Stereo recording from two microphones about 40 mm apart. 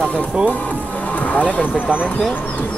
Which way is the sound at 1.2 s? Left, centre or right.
Left.